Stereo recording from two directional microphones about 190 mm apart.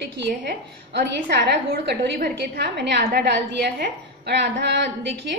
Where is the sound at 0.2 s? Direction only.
60° right (ahead or behind).